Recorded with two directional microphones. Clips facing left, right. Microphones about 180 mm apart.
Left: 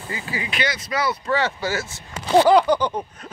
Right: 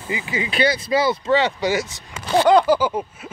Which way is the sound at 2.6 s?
5° right (ahead or behind).